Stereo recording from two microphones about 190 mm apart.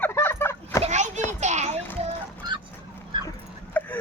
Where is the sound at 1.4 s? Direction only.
35° right (ahead or behind).